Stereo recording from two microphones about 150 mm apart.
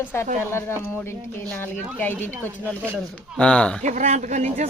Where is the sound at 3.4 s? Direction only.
5° left (ahead or behind).